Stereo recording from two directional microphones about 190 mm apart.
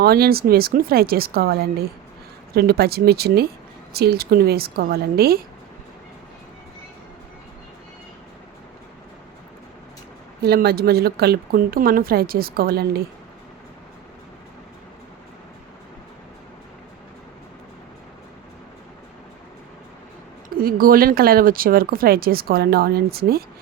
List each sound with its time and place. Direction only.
0.0 s a woman's voice: 55° right (ahead or behind)
10.4 s speech: 55° right (ahead or behind)
20.6 s speech: 50° right (ahead or behind)